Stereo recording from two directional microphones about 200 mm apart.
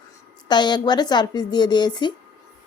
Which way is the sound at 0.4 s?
20° left (ahead or behind).